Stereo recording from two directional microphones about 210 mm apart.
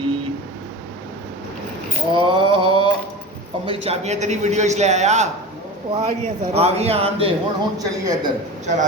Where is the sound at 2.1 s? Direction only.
25° right (ahead or behind).